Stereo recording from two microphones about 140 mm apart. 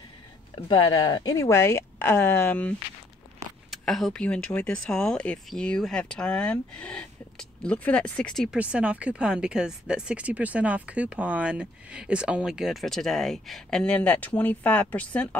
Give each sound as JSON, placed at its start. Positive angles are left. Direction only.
{"t": 0.7, "sound": "speech", "side_deg": 30}
{"t": 3.7, "sound": "speech", "side_deg": 0}
{"t": 8.5, "sound": "speech", "side_deg": -10}